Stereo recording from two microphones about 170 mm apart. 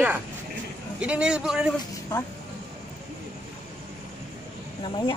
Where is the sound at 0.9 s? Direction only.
5° right (ahead or behind).